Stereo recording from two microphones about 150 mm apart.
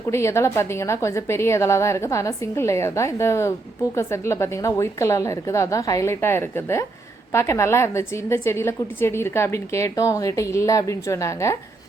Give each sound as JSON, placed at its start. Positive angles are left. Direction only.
{"t": 0.1, "sound": "a woman's voice", "side_deg": 20}